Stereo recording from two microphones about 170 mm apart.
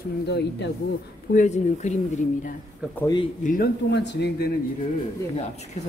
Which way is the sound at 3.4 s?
45° left (ahead or behind).